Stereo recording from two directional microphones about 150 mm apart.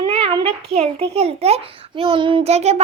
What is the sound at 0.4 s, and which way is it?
A child's voice, 40° right (ahead or behind).